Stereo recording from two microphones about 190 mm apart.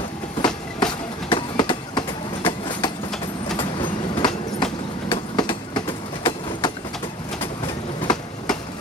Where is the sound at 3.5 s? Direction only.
25° left (ahead or behind).